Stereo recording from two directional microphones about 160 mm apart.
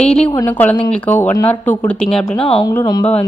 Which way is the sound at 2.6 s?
25° left (ahead or behind).